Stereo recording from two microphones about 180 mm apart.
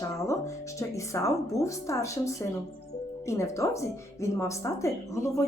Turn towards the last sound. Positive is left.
turn(degrees=15)  # may be behind; listen again after turning